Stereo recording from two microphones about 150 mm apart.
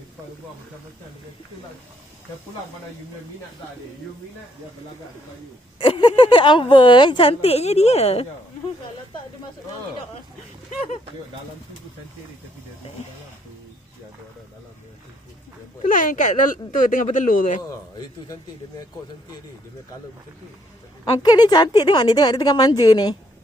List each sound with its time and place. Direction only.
5.8 s a woman's voice: 30° left (ahead or behind)
15.8 s speech: 65° left (ahead or behind)
17.6 s a woman's voice: 25° left (ahead or behind)
21.0 s a woman's voice: 30° left (ahead or behind)